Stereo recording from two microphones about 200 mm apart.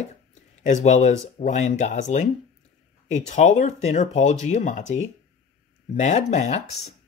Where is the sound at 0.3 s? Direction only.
35° left (ahead or behind).